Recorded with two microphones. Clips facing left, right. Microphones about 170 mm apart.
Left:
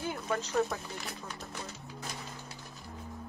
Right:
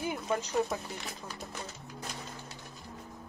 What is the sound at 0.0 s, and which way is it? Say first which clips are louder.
Speech: right 1 dB; 15° right (ahead or behind).